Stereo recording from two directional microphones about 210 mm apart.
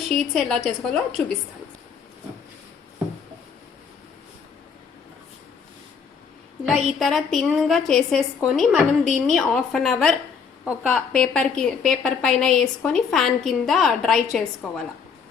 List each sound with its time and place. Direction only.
0.1 s a woman's voice: centre (ahead or behind)
6.7 s a woman's voice: 5° right (ahead or behind)